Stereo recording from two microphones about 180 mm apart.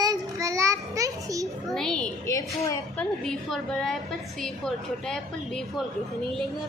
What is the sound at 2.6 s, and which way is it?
Speech, 15° left (ahead or behind).